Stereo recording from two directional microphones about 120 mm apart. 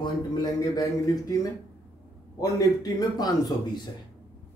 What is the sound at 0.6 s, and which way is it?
Speech, 30° left (ahead or behind).